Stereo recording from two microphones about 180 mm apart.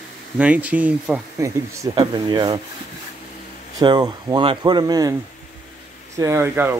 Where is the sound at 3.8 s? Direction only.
25° right (ahead or behind).